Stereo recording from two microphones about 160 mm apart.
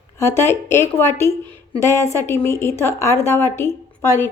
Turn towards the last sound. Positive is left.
turn(degrees=15)  # may be behind; listen again after turning